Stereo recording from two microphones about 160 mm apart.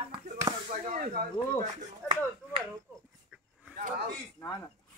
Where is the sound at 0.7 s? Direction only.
55° right (ahead or behind).